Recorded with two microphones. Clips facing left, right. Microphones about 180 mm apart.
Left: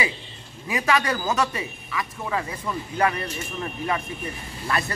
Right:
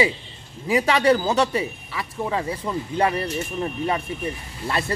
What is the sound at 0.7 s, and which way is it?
Speech, 30° right (ahead or behind).